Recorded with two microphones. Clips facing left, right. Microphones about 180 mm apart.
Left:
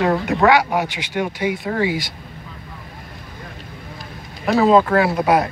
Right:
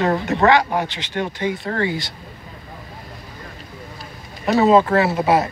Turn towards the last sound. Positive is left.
turn(degrees=-5)  # may be behind; listen again after turning